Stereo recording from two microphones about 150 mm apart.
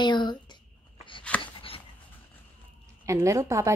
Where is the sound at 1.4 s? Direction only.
40° left (ahead or behind).